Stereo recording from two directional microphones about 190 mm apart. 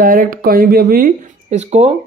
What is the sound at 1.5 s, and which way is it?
Speech, 35° right (ahead or behind).